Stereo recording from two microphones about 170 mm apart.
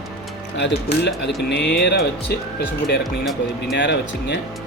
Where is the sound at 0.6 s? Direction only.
90° left; by 2.4 s 70° left (ahead or behind).